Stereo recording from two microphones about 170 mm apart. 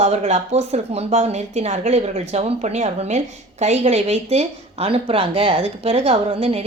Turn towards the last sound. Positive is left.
turn(degrees=-40)  # may be behind; listen again after turning